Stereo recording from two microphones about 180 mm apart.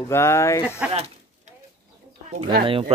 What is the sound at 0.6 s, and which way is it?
Speech, 5° right (ahead or behind).